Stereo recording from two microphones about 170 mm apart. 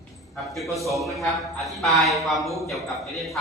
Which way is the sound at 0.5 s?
Centre (ahead or behind).